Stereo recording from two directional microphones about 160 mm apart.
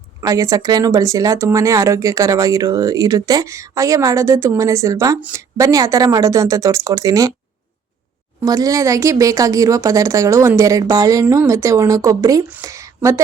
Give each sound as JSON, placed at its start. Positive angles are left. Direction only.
{"t": 0.2, "sound": "speech", "side_deg": -20}
{"t": 8.4, "sound": "speech", "side_deg": -20}
{"t": 12.6, "sound": "a sound", "side_deg": -20}